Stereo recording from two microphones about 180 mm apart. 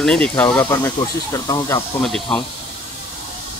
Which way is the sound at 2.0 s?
Centre (ahead or behind).